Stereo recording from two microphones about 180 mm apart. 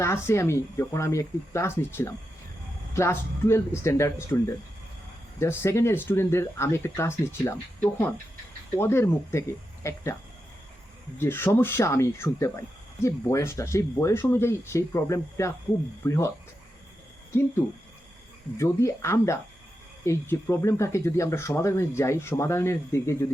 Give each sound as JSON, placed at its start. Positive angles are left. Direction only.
{"t": 0.0, "sound": "speech", "side_deg": 15}
{"t": 8.7, "sound": "speech", "side_deg": 15}
{"t": 11.2, "sound": "speech", "side_deg": 10}
{"t": 18.5, "sound": "speech", "side_deg": 15}